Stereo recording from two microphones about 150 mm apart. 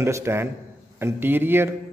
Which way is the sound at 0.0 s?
15° right (ahead or behind).